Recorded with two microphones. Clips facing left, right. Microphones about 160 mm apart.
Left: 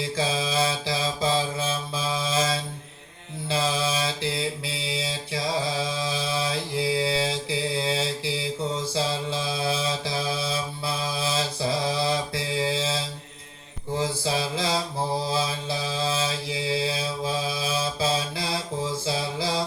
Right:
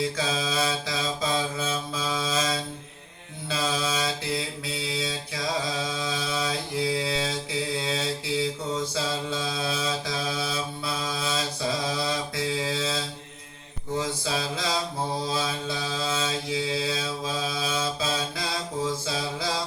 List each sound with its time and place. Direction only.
0.2 s mantra: 25° left (ahead or behind)
14.0 s mantra: 25° left (ahead or behind)